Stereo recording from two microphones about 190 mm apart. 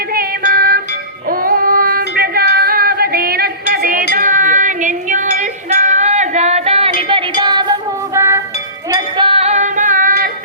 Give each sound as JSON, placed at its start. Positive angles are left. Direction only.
{"t": 0.1, "sound": "music", "side_deg": -50}
{"t": 1.3, "sound": "child singing", "side_deg": -50}
{"t": 4.1, "sound": "music", "side_deg": -45}
{"t": 8.9, "sound": "a sound", "side_deg": -25}